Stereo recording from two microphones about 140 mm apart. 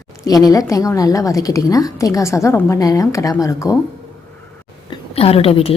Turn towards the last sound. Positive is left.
turn(degrees=40)  # may be behind; listen again after turning